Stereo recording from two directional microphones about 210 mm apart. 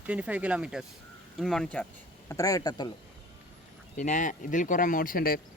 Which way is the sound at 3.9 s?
35° left (ahead or behind).